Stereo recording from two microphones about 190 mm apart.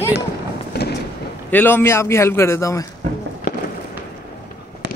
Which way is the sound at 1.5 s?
10° left (ahead or behind).